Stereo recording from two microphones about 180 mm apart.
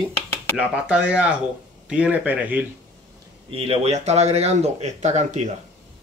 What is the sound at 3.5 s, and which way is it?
Speech, 30° right (ahead or behind).